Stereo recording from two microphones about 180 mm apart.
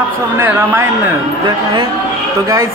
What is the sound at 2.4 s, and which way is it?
Speech, 20° right (ahead or behind).